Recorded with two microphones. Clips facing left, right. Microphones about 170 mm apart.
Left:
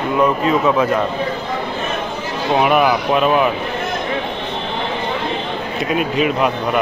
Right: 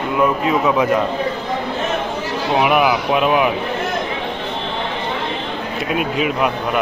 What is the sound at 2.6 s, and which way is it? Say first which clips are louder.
Speech: left 1 dB; 5° right (ahead or behind).